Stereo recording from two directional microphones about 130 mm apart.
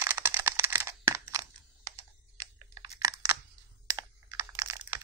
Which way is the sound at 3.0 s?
30° right (ahead or behind).